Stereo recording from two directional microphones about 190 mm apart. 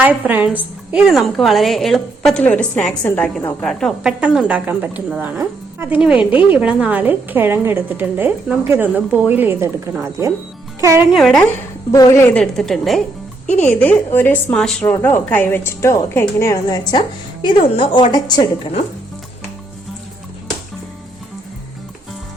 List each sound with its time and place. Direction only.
0.0 s a woman's voice: 10° right (ahead or behind)
11.1 s a woman's voice: centre (ahead or behind)
11.9 s a woman's voice: 20° left (ahead or behind)